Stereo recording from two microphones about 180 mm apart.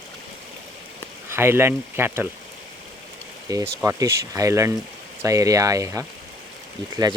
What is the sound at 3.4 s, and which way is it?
Speech, 15° right (ahead or behind).